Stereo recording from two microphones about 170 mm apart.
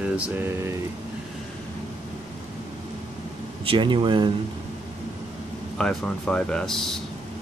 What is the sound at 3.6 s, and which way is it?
Speech, 30° right (ahead or behind).